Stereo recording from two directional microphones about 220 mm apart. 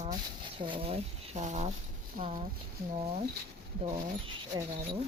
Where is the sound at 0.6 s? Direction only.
25° right (ahead or behind); by 2.3 s 40° right (ahead or behind).